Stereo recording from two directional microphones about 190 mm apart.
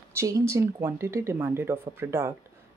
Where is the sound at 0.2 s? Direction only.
15° right (ahead or behind).